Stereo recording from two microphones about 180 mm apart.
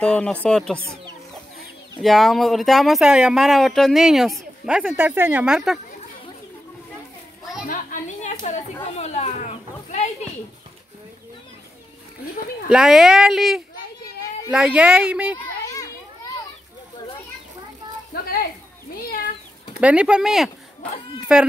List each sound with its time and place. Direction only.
0.0 s speech: 5° left (ahead or behind)
2.0 s speech: centre (ahead or behind)
7.6 s a woman's voice: 45° left (ahead or behind)
8.9 s children playing: 35° left (ahead or behind)
12.6 s speech: centre (ahead or behind)
18.1 s a sound: 55° left (ahead or behind)
19.8 s speech: 5° right (ahead or behind)